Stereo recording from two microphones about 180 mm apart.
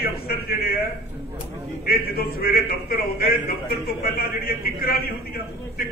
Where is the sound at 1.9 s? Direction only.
60° left (ahead or behind).